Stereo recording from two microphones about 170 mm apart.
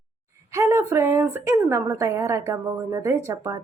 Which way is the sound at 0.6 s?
15° right (ahead or behind).